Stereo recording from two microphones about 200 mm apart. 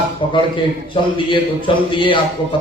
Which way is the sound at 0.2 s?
25° left (ahead or behind).